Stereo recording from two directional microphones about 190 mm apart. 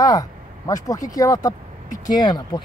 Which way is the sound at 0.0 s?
20° left (ahead or behind).